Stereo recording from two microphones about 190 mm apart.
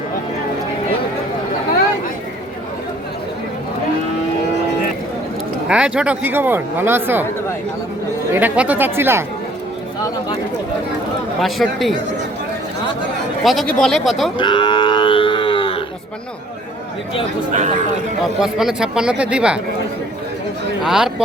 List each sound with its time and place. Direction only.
5.6 s speech: 5° right (ahead or behind)
8.3 s speech: 10° right (ahead or behind)
11.3 s speech: centre (ahead or behind)
13.4 s speech: centre (ahead or behind)
14.3 s moo: 25° left (ahead or behind)
18.2 s speech: centre (ahead or behind)
20.8 s speech: 5° right (ahead or behind)